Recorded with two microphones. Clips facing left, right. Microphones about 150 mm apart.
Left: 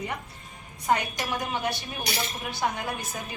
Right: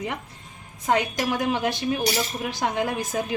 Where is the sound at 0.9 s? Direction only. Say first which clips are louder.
Right 3 dB; 90° right.